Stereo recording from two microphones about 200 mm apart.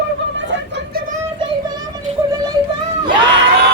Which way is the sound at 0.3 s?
60° right (ahead or behind).